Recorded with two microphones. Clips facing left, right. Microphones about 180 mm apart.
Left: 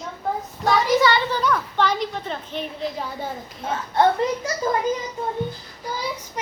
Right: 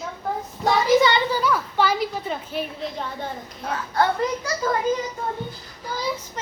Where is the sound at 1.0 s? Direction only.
20° right (ahead or behind).